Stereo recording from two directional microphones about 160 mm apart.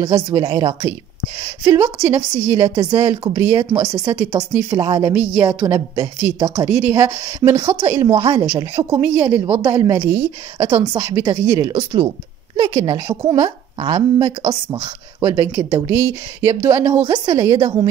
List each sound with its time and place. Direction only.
0.0 s a woman's voice: 25° right (ahead or behind)